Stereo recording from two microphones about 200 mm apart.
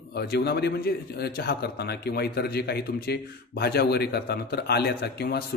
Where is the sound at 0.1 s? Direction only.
55° left (ahead or behind).